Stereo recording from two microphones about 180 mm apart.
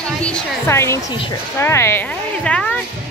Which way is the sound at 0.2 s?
5° left (ahead or behind).